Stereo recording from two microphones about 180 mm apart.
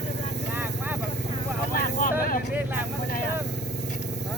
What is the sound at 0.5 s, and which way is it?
Vehicle, 10° right (ahead or behind).